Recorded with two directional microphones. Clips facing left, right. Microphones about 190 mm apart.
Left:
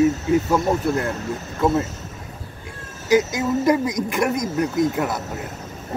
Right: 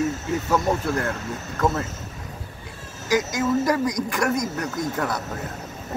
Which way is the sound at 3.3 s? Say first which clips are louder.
Left 2 dB; 25° left (ahead or behind).